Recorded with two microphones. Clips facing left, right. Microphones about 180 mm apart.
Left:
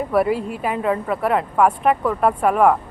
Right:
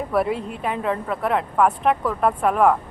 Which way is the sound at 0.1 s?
Centre (ahead or behind).